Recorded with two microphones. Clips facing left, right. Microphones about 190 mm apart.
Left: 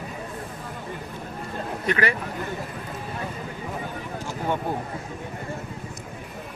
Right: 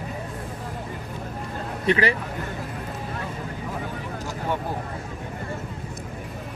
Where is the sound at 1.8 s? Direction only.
30° right (ahead or behind).